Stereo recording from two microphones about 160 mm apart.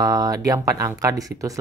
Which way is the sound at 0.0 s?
20° right (ahead or behind).